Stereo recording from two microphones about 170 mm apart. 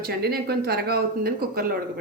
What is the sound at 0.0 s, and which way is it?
Speech, 65° right (ahead or behind).